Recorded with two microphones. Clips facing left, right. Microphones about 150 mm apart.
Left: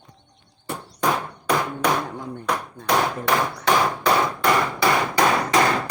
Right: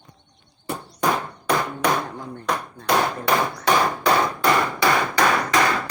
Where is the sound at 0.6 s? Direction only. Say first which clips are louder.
Right 1 dB; 5° right (ahead or behind).